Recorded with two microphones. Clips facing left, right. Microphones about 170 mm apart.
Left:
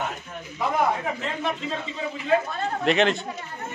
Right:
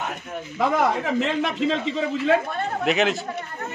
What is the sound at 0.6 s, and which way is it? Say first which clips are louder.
A man's voice: right 3 dB; 90° right.